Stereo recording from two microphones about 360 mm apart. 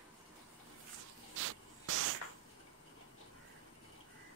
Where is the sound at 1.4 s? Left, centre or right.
Right.